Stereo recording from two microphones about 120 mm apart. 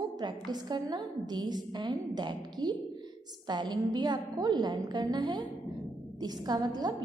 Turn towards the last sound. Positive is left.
turn(degrees=-35)  # may be behind; listen again after turning